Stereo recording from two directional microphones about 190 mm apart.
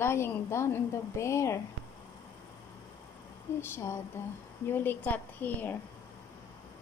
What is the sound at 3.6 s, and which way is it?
A woman's voice, 15° left (ahead or behind).